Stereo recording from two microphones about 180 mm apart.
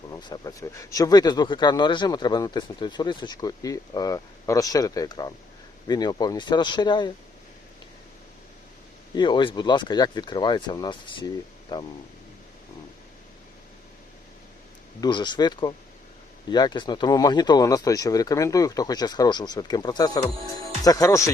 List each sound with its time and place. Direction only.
0.1 s speech: 20° left (ahead or behind)
9.1 s speech: 25° left (ahead or behind)
15.0 s speech: 25° left (ahead or behind)